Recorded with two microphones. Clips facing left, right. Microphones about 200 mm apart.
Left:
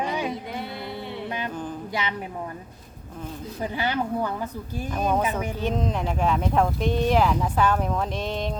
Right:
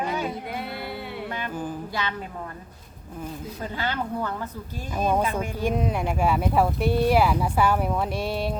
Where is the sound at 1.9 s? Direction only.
20° left (ahead or behind).